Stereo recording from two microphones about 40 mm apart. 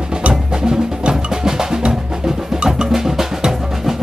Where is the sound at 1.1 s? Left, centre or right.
Centre.